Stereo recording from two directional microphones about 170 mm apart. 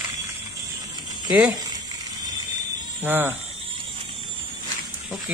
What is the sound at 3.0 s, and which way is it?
Speech, 10° right (ahead or behind).